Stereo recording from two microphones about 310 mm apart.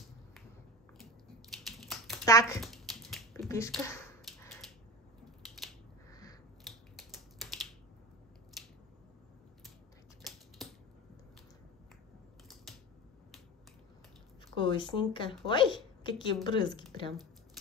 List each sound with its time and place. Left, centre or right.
1.6 s a sound: centre
5.2 s scissors: centre
6.6 s typing: centre
10.2 s typewriter: centre
10.6 s a sound: centre
14.6 s a woman's voice: centre